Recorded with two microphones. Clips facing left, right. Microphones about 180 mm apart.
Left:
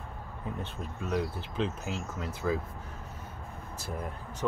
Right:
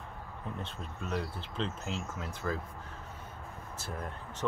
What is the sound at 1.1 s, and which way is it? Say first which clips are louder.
Speech: left 5 dB; 5° left (ahead or behind).